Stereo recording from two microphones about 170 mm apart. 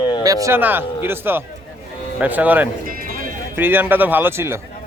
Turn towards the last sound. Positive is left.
turn(degrees=-15)  # may be behind; listen again after turning